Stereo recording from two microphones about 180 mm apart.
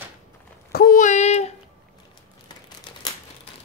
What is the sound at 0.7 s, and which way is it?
Child singing, 55° left (ahead or behind).